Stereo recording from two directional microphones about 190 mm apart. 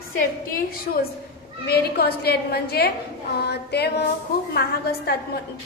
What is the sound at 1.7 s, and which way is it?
A woman's voice, 55° left (ahead or behind).